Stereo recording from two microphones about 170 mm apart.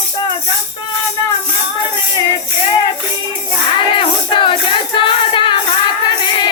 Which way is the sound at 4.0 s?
30° left (ahead or behind).